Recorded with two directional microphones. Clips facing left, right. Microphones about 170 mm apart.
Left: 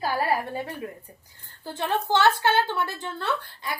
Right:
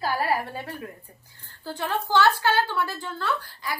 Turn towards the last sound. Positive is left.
turn(degrees=25)  # may be behind; listen again after turning